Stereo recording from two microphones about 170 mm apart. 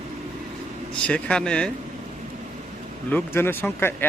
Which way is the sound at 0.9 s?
5° left (ahead or behind).